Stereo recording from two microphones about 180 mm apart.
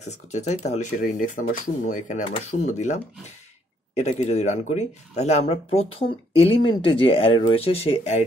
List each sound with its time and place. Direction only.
0.3 s speech: 40° left (ahead or behind)